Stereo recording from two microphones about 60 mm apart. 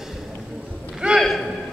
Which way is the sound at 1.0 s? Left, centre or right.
Centre.